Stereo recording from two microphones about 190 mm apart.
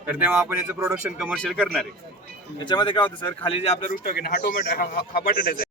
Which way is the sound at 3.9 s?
50° left (ahead or behind).